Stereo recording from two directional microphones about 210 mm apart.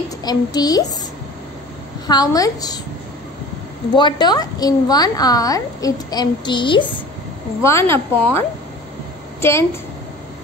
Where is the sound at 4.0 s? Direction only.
20° left (ahead or behind).